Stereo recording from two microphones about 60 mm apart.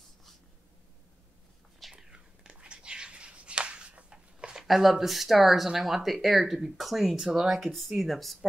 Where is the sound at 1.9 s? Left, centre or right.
Centre.